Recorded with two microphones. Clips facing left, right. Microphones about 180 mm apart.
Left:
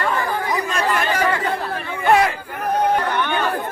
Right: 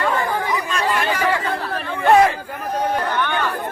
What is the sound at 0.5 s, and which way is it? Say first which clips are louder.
Chatter: left 1 dB; 40° left (ahead or behind).